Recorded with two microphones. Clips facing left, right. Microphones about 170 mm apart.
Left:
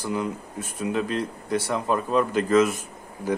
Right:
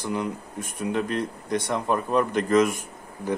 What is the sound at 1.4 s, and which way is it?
Speech, 10° left (ahead or behind).